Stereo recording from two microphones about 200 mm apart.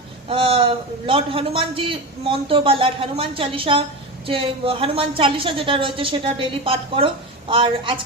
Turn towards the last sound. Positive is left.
turn(degrees=-25)  # may be behind; listen again after turning